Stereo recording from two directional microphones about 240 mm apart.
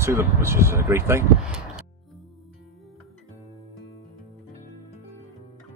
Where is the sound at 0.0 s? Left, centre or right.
Centre.